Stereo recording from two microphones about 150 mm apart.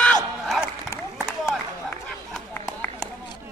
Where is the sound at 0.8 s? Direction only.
20° left (ahead or behind).